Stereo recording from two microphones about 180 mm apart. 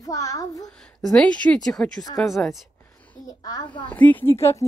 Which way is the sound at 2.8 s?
10° left (ahead or behind).